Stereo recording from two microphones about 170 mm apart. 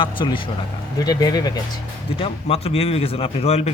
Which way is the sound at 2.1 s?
35° left (ahead or behind).